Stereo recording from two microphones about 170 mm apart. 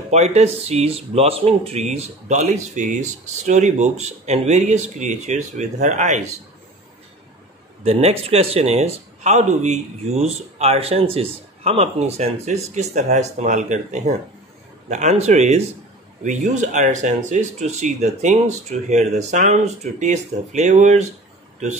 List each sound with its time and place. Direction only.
0.1 s speech: 40° right (ahead or behind)
7.8 s speech: 35° right (ahead or behind)